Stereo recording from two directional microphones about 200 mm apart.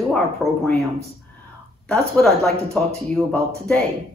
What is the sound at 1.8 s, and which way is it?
Speech, 5° left (ahead or behind).